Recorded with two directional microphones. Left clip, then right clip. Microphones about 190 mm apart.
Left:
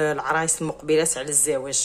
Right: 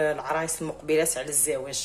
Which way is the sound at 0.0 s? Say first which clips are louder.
Left 3 dB; 25° left (ahead or behind).